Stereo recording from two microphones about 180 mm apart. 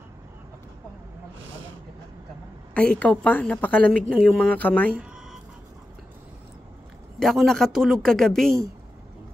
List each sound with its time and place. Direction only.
1.4 s vehicle: 90° right
2.7 s a woman's voice: 5° left (ahead or behind)
7.2 s a woman's voice: centre (ahead or behind)